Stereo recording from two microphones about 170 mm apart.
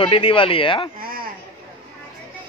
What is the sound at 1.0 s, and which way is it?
Speech, 55° right (ahead or behind).